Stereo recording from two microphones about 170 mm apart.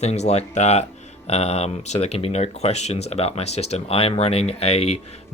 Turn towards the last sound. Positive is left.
turn(degrees=35)  # may be behind; listen again after turning